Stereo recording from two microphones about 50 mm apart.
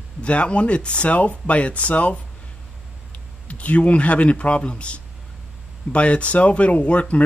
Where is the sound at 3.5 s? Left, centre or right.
Left.